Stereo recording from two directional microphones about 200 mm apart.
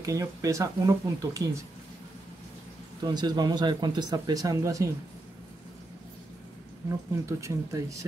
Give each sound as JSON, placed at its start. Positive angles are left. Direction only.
{"t": 0.0, "sound": "speech", "side_deg": -15}
{"t": 3.0, "sound": "speech", "side_deg": -20}
{"t": 7.2, "sound": "speech", "side_deg": -15}